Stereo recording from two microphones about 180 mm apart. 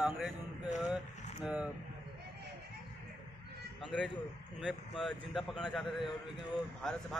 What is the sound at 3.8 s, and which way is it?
Speech, centre (ahead or behind).